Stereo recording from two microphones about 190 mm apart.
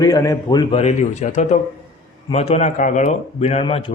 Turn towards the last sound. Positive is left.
turn(degrees=30)  # may be behind; listen again after turning